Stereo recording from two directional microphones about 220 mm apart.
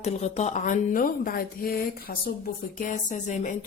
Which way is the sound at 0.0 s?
30° left (ahead or behind).